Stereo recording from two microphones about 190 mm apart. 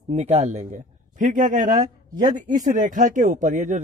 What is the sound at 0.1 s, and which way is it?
Speech, 35° right (ahead or behind).